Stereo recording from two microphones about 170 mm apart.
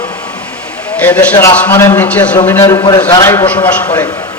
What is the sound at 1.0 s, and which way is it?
A man's voice, 10° left (ahead or behind).